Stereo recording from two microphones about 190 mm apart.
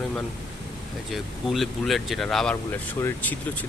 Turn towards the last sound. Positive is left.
turn(degrees=10)  # may be behind; listen again after turning